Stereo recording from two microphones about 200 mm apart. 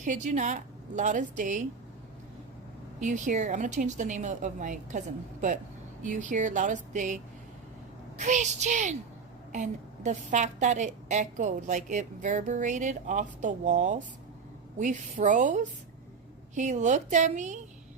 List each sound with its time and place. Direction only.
0.0 s a woman's voice: 40° right (ahead or behind)
3.0 s a woman's voice: 40° right (ahead or behind)
8.2 s a woman's voice: 35° right (ahead or behind)